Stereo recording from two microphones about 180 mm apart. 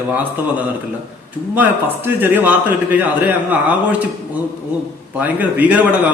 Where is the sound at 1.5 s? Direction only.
10° right (ahead or behind).